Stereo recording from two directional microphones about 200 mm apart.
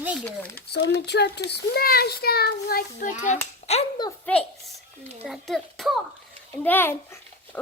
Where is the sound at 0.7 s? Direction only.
55° left (ahead or behind); by 4.0 s 30° left (ahead or behind).